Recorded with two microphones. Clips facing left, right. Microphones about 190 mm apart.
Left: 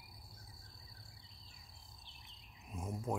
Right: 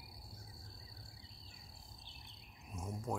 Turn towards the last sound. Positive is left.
turn(degrees=10)  # may be behind; listen again after turning